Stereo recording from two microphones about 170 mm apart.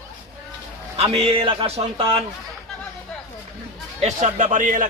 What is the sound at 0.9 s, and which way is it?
A man's voice, 35° right (ahead or behind).